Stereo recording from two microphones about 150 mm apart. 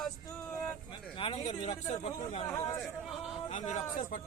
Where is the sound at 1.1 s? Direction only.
35° left (ahead or behind).